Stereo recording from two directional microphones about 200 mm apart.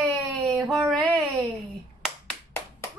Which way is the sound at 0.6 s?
Centre (ahead or behind).